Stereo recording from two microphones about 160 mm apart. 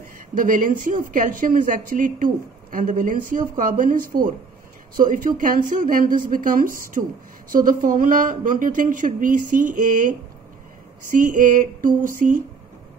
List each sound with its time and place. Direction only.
0.3 s a woman's voice: 55° right (ahead or behind)